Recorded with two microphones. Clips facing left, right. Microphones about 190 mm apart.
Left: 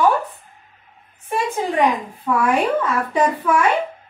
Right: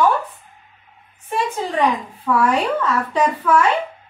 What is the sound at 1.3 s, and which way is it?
Speech, 15° left (ahead or behind).